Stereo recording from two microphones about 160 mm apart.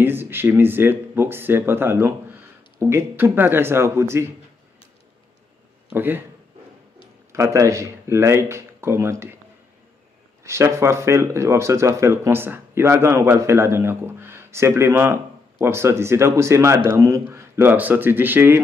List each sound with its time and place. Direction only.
0.0 s speech: 15° right (ahead or behind)
5.9 s speech: 15° right (ahead or behind)
7.3 s speech: 20° right (ahead or behind)
10.4 s speech: 15° right (ahead or behind)